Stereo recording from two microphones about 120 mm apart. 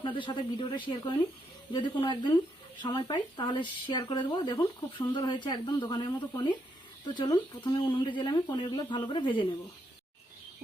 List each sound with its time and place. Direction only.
0.0 s speech: 45° left (ahead or behind)